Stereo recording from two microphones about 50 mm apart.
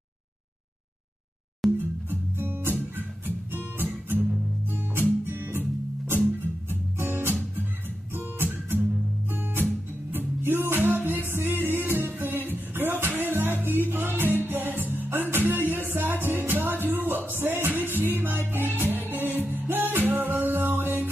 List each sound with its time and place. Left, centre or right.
1.8 s music: right
4.6 s guitar: right
6.7 s music: right